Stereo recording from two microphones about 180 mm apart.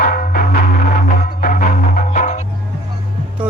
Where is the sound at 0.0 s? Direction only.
55° left (ahead or behind).